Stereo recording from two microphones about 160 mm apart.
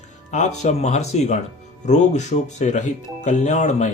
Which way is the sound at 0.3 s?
45° left (ahead or behind).